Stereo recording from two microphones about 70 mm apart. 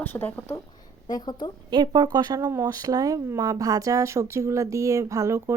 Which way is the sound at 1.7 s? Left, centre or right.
Right.